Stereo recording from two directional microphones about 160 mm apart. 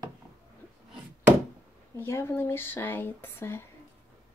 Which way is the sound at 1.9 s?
15° left (ahead or behind).